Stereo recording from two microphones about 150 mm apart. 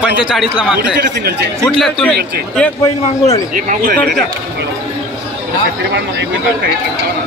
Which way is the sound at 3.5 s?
60° right (ahead or behind).